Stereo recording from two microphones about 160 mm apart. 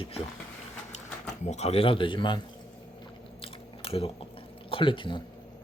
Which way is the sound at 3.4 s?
35° left (ahead or behind).